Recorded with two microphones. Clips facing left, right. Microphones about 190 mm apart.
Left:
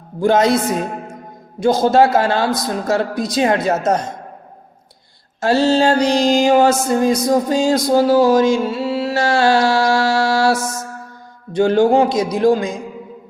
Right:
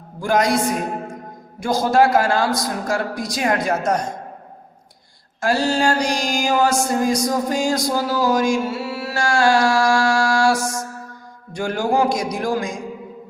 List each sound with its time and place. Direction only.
0.2 s mantra: 25° left (ahead or behind)
5.4 s mantra: 25° left (ahead or behind)
7.9 s music: 25° left (ahead or behind)
10.5 s music: 5° left (ahead or behind)
11.5 s mantra: 25° left (ahead or behind)